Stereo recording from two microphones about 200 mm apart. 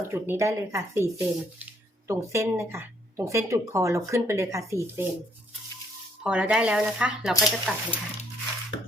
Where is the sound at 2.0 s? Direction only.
15° right (ahead or behind).